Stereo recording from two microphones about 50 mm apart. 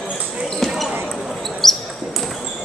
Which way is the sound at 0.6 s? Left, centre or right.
Centre.